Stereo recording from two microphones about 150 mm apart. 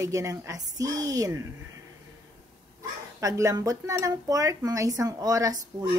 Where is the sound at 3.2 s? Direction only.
20° right (ahead or behind).